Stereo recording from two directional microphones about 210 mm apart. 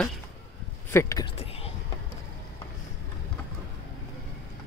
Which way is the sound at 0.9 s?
15° left (ahead or behind).